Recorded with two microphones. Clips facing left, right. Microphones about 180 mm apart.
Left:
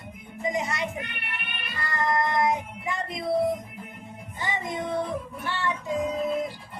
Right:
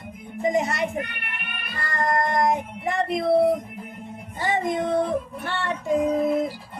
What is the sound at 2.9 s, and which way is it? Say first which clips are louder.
Speech: right 7 dB; 70° right (ahead or behind).